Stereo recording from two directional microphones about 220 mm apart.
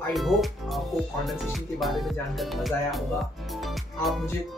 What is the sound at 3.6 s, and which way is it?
Music, centre (ahead or behind).